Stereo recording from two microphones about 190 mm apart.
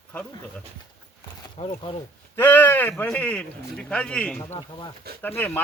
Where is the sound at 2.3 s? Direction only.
10° left (ahead or behind).